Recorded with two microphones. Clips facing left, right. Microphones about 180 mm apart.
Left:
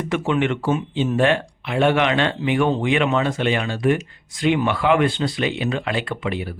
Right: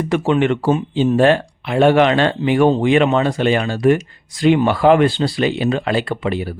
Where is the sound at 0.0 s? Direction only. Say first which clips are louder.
Right 5 dB; 35° right (ahead or behind).